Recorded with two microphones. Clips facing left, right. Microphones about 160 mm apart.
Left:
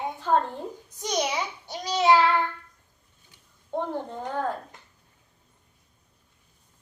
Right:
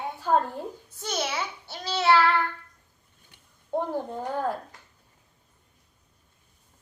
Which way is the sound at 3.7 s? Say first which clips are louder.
Right 1 dB; 10° right (ahead or behind).